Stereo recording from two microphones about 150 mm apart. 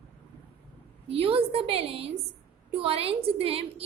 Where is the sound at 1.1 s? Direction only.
40° right (ahead or behind).